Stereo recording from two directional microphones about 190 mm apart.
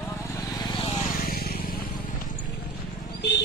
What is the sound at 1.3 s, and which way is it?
Vehicle, 50° left (ahead or behind).